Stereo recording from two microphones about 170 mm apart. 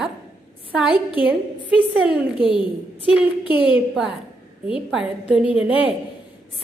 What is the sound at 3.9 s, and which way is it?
A woman's voice, centre (ahead or behind).